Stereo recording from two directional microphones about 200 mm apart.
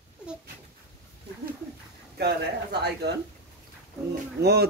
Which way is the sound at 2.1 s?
55° right (ahead or behind).